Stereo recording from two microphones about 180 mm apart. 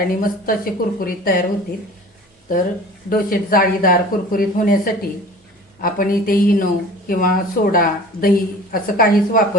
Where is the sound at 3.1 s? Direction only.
55° left (ahead or behind).